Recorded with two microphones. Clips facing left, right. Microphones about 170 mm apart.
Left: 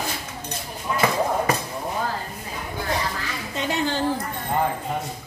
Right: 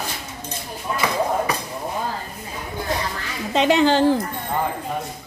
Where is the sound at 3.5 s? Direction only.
90° right.